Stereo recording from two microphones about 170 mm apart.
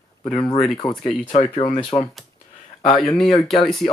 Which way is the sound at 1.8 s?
30° left (ahead or behind).